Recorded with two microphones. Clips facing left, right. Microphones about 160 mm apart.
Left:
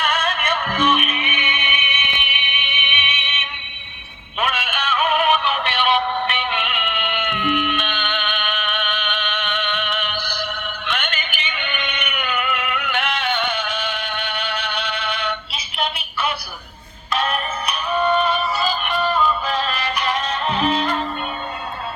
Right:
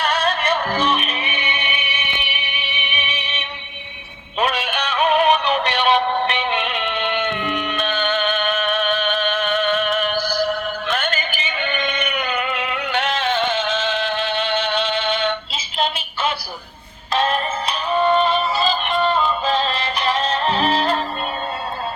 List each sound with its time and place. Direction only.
0.0 s music: 35° right (ahead or behind)
4.4 s synthetic singing: 35° right (ahead or behind)
17.1 s music: 30° right (ahead or behind)